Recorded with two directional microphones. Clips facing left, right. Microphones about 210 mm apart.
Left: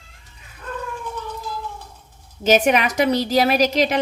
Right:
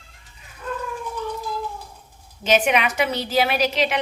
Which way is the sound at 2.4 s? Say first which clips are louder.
Left 3 dB; 45° left (ahead or behind).